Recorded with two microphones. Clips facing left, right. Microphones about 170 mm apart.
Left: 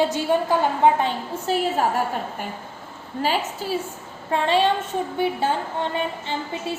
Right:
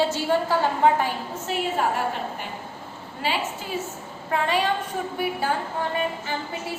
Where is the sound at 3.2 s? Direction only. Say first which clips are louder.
Left 3 dB; 40° left (ahead or behind).